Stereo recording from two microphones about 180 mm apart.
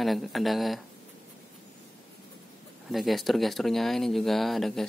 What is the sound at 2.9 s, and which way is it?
Speech, centre (ahead or behind).